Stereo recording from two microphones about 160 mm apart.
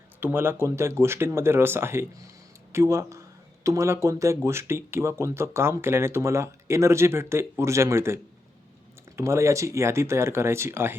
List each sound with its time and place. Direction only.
0.2 s speech: 15° right (ahead or behind)